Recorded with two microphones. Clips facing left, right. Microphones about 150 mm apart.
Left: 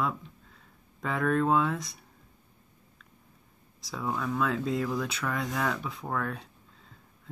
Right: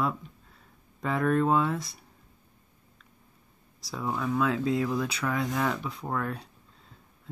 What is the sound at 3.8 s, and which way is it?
Speech, centre (ahead or behind).